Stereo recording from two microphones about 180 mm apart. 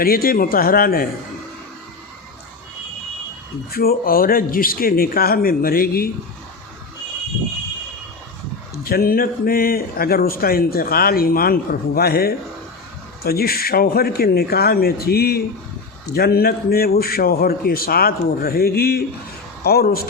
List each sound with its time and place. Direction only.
0.0 s speech: 55° left (ahead or behind)
3.7 s speech: 55° left (ahead or behind)
8.7 s speech: 60° left (ahead or behind)